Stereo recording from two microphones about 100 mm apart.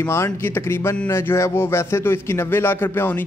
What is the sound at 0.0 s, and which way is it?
A man's voice, 25° left (ahead or behind).